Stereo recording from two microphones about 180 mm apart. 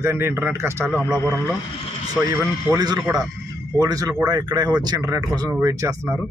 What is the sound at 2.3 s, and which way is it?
Speech, 20° right (ahead or behind).